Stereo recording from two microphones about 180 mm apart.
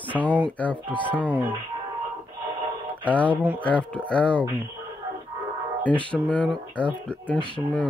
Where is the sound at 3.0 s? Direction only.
10° left (ahead or behind).